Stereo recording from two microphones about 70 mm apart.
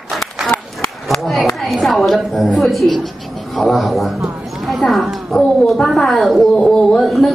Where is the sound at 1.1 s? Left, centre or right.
Centre.